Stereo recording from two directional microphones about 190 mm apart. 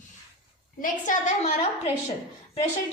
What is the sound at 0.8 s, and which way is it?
Speech, 40° left (ahead or behind).